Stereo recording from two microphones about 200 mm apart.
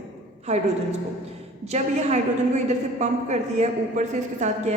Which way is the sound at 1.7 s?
35° right (ahead or behind).